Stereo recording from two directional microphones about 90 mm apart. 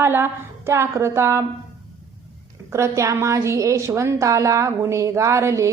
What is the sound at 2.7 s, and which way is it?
A woman's voice, 35° right (ahead or behind).